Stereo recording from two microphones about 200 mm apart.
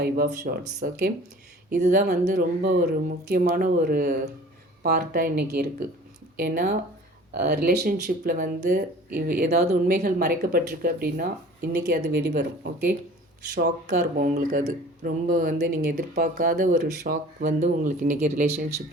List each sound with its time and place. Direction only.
0.0 s speech: 50° right (ahead or behind)
14.2 s speech: 45° right (ahead or behind)